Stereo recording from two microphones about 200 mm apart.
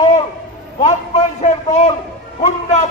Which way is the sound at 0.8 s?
35° left (ahead or behind).